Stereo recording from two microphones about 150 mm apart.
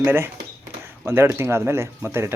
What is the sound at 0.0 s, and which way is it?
Speech, 15° right (ahead or behind).